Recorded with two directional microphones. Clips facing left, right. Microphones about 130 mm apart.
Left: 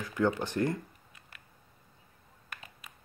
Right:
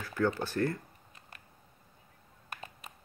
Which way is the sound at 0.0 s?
20° left (ahead or behind).